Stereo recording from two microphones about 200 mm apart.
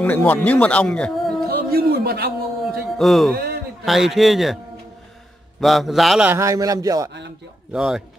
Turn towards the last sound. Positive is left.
turn(degrees=-5)  # may be behind; listen again after turning